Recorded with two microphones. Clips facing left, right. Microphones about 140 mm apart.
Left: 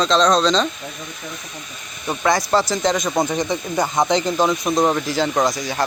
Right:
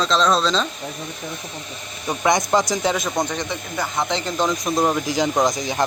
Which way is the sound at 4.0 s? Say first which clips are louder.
Left 4 dB; 15° left (ahead or behind).